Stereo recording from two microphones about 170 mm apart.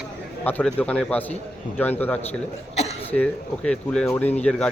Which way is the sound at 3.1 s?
10° left (ahead or behind).